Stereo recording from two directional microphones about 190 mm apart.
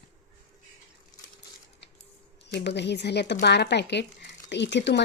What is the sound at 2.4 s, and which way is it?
Speech, 65° left (ahead or behind).